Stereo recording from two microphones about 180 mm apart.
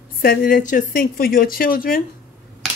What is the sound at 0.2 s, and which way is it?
A woman's voice, 55° left (ahead or behind).